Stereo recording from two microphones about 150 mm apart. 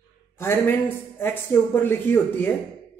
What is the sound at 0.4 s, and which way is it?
A man's voice, 15° left (ahead or behind).